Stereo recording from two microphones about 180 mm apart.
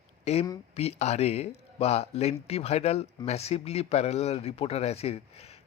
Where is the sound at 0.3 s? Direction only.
35° left (ahead or behind).